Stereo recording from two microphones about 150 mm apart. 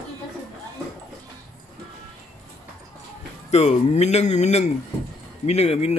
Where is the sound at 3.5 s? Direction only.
50° left (ahead or behind).